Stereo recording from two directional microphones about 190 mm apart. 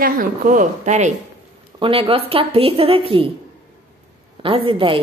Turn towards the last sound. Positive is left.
turn(degrees=-30)  # may be behind; listen again after turning